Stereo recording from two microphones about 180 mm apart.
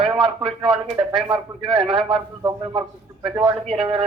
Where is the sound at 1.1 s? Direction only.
5° right (ahead or behind).